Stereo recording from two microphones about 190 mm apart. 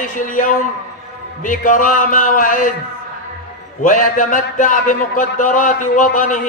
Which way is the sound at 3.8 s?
45° left (ahead or behind).